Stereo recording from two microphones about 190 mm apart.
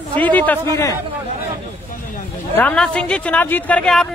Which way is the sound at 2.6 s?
5° left (ahead or behind).